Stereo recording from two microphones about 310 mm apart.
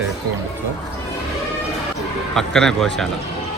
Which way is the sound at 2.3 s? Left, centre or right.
Centre.